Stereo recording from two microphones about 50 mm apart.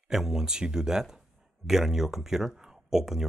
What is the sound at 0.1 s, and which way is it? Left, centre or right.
Speech, centre.